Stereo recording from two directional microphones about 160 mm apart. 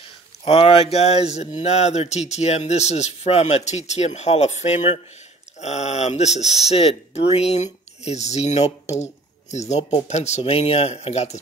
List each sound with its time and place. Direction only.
0.5 s speech: 35° left (ahead or behind)